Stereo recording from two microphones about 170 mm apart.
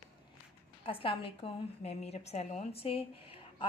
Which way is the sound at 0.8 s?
30° left (ahead or behind).